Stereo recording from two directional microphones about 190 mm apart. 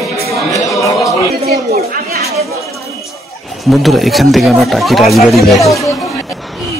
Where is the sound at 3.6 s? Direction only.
Centre (ahead or behind).